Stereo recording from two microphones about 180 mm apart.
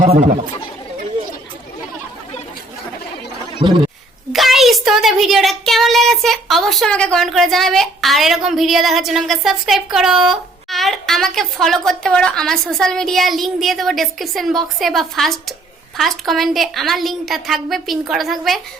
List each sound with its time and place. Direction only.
0.0 s speech: 45° right (ahead or behind)
3.6 s speech: 25° right (ahead or behind)
4.3 s a child's voice: centre (ahead or behind)